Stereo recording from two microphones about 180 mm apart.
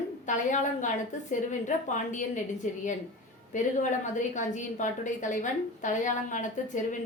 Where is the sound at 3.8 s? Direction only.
45° left (ahead or behind).